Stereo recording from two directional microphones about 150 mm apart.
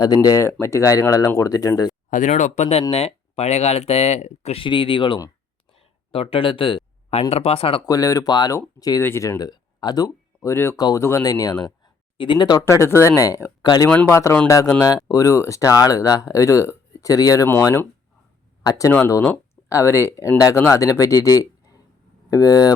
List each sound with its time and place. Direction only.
0.0 s speech: 25° left (ahead or behind)
2.0 s speech: 55° left (ahead or behind); by 7.8 s 40° left (ahead or behind)
7.9 s speech: 25° left (ahead or behind)
12.6 s speech: 20° left (ahead or behind)
13.9 s speech: 10° left (ahead or behind); by 22.7 s 25° left (ahead or behind)